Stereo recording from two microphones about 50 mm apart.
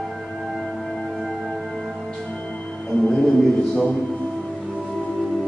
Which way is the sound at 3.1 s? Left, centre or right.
Left.